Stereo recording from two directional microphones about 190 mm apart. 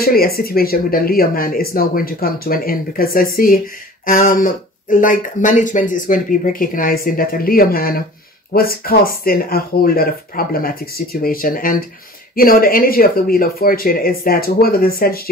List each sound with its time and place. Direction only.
0.0 s speech: 55° left (ahead or behind)